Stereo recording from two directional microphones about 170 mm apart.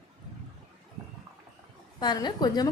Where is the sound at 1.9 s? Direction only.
25° left (ahead or behind).